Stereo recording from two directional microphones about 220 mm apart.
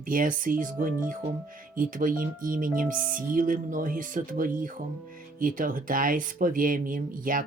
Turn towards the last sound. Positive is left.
turn(degrees=-40)  # may be behind; listen again after turning